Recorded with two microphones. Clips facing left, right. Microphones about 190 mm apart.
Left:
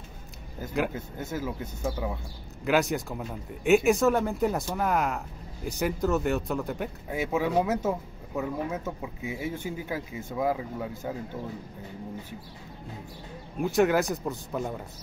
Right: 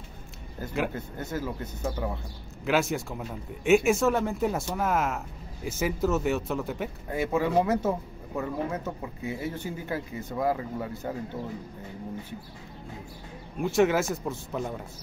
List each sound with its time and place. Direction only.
0.6 s speech: 5° left (ahead or behind)
13.6 s speech: centre (ahead or behind)